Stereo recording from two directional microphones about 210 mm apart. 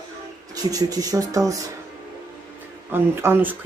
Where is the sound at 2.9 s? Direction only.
10° right (ahead or behind).